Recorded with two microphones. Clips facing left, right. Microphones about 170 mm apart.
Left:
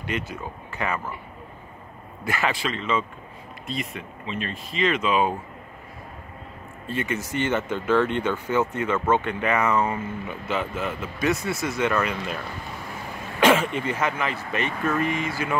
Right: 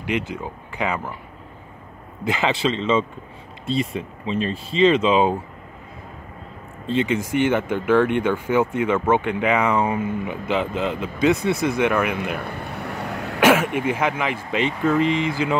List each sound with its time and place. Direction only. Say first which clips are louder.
0.0 s speech: right 5 dB; 15° right (ahead or behind)
2.2 s speech: right 5 dB; 20° right (ahead or behind)
6.9 s speech: right 7 dB; 20° right (ahead or behind)
12.4 s a sound: right 5 dB; 65° right (ahead or behind)
13.4 s throat clearing: right 2 dB; 10° right (ahead or behind)
13.7 s speech: right 4 dB; 10° right (ahead or behind)